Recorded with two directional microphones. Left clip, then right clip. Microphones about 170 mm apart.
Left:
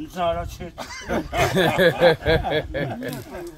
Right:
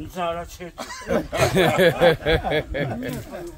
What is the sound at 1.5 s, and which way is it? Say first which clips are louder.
Speech: right 1 dB; centre (ahead or behind).